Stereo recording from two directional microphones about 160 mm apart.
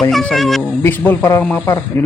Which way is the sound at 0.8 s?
15° left (ahead or behind).